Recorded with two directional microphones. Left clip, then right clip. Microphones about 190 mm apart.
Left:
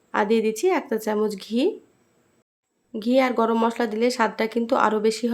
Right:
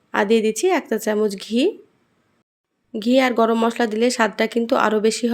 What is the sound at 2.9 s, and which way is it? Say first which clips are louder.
A woman's voice: right 3 dB; 20° right (ahead or behind).